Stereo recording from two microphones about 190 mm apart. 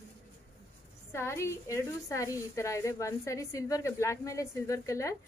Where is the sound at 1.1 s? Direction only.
15° left (ahead or behind).